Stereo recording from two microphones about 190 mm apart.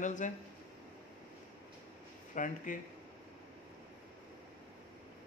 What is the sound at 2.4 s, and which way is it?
Speech, 45° left (ahead or behind).